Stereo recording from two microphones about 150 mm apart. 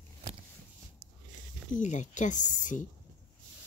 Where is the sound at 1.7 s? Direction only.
55° left (ahead or behind).